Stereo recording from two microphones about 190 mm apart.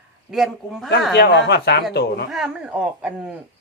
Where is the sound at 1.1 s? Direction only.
60° left (ahead or behind).